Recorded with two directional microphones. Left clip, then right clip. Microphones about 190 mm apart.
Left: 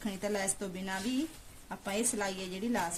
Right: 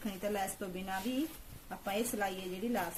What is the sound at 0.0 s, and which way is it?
A woman's voice, 40° left (ahead or behind).